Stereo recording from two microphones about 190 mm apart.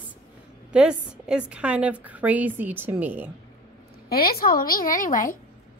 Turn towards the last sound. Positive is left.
turn(degrees=45)  # may be behind; listen again after turning